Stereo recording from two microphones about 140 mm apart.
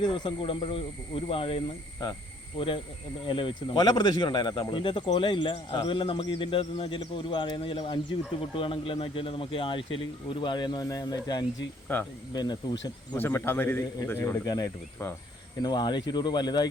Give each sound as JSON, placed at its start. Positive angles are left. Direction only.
{"t": 0.0, "sound": "speech", "side_deg": 35}
{"t": 11.9, "sound": "a man's voice", "side_deg": 10}
{"t": 12.3, "sound": "speech", "side_deg": 30}
{"t": 13.1, "sound": "a man's voice", "side_deg": 15}